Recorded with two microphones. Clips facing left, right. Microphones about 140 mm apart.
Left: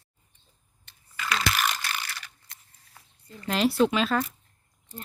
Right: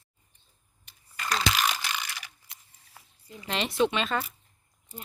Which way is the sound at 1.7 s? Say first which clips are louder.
Even; 10° right (ahead or behind).